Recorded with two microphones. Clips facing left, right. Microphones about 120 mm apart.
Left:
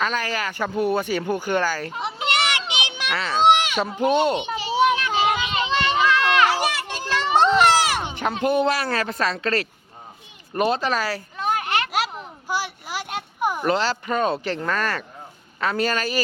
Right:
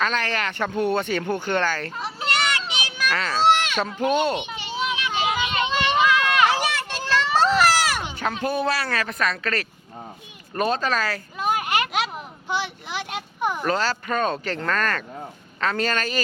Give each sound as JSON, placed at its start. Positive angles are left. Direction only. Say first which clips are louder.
{"t": 0.0, "sound": "speech", "louder": "even", "side_deg": 10}
{"t": 4.4, "sound": "children playing", "louder": "left 5 dB", "side_deg": 30}
{"t": 5.1, "sound": "vehicle", "louder": "left 2 dB", "side_deg": 30}
{"t": 6.0, "sound": "a sound", "louder": "right 1 dB", "side_deg": -15}
{"t": 6.5, "sound": "a sound", "louder": "left 1 dB", "side_deg": 10}
{"t": 8.1, "sound": "speech", "louder": "left 4 dB", "side_deg": 20}
{"t": 10.5, "sound": "speech", "louder": "left 1 dB", "side_deg": 15}
{"t": 11.3, "sound": "children playing", "louder": "right 1 dB", "side_deg": -15}
{"t": 11.9, "sound": "a sound", "louder": "left 1 dB", "side_deg": 5}
{"t": 13.7, "sound": "speech", "louder": "left 2 dB", "side_deg": 15}